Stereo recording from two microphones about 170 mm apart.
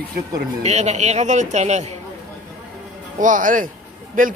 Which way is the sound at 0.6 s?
40° right (ahead or behind).